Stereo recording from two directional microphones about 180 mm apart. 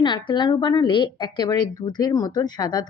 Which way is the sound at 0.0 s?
25° left (ahead or behind).